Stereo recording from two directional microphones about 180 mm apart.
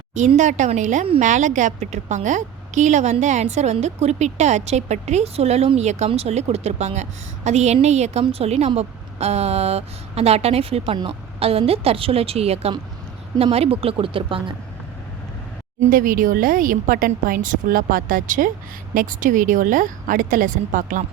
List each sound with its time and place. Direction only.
0.1 s a woman's voice: 40° right (ahead or behind)
15.8 s speech: 50° right (ahead or behind)